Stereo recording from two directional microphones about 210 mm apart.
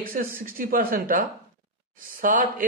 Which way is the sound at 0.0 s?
45° right (ahead or behind).